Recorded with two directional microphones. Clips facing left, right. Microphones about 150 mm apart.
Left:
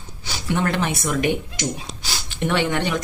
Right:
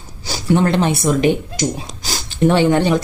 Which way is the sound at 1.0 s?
30° right (ahead or behind).